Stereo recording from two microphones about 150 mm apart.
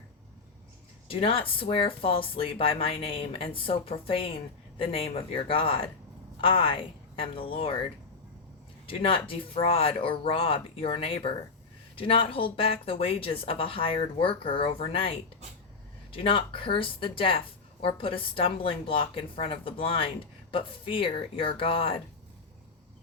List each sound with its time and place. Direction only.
1.0 s speech: 40° left (ahead or behind)
8.9 s speech: 35° left (ahead or behind)
16.1 s speech: 35° left (ahead or behind)